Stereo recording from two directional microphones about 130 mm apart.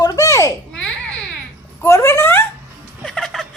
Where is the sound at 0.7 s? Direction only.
5° left (ahead or behind).